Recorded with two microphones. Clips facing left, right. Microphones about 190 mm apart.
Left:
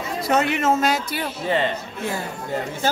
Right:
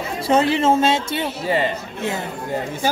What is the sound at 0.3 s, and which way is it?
A man's voice, 30° right (ahead or behind).